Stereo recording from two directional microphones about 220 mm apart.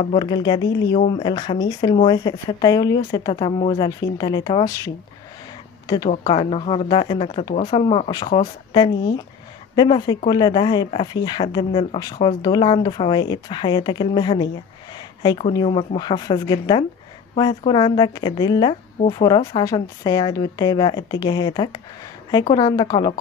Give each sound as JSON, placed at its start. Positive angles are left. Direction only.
{"t": 0.0, "sound": "speech", "side_deg": 20}
{"t": 6.0, "sound": "speech", "side_deg": 20}